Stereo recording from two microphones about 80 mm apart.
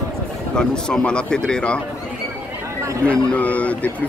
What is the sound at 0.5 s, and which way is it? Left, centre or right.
Speech, centre.